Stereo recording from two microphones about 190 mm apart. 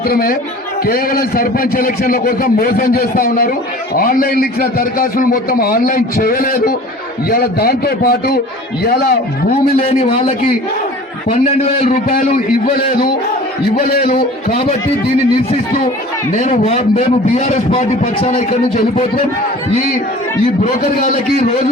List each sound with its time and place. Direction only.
0.1 s a man's voice: 50° left (ahead or behind)
11.3 s a man's voice: 30° left (ahead or behind)
13.7 s a man's voice: 50° left (ahead or behind)
14.2 s a man's voice: 30° left (ahead or behind)
16.3 s a man's voice: 35° left (ahead or behind)
20.7 s a man's voice: 40° left (ahead or behind)